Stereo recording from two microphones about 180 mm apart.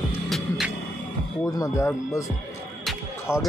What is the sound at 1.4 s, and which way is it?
Speech, 20° left (ahead or behind).